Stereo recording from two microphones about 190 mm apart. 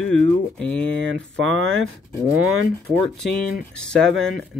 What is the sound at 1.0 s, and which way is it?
Speech, 90° right.